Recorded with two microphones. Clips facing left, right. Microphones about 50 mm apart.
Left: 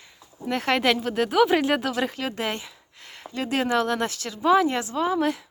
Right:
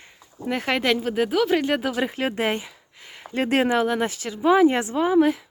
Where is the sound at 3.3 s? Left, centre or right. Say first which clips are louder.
Right 5 dB; right.